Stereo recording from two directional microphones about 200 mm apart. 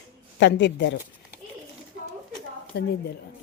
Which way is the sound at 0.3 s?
65° left (ahead or behind).